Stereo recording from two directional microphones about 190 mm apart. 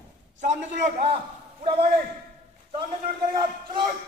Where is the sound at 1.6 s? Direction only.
30° right (ahead or behind).